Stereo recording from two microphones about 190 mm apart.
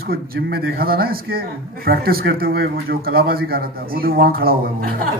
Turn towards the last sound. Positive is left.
turn(degrees=-50)  # may be behind; listen again after turning